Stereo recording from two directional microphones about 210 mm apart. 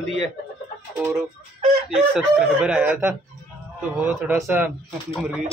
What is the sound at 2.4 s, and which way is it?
Speech, 5° right (ahead or behind).